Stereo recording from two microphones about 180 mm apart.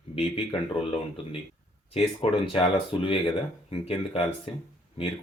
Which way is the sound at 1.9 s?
30° left (ahead or behind).